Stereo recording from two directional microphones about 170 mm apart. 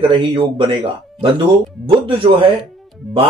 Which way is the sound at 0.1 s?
30° right (ahead or behind).